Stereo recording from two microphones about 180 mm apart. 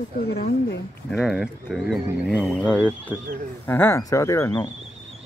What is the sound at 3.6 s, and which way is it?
Speech, 10° left (ahead or behind).